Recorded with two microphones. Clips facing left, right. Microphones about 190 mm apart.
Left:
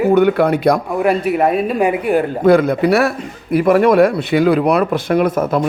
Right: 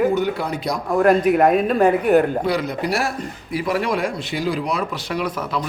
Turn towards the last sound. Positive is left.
turn(degrees=50)  # may be behind; listen again after turning